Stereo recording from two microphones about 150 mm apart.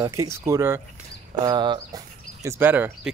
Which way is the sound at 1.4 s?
30° right (ahead or behind).